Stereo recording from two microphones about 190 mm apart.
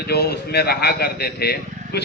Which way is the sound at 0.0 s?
60° left (ahead or behind).